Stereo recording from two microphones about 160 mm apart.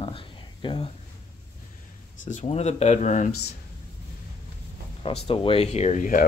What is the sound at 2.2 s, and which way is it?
Speech, 45° left (ahead or behind).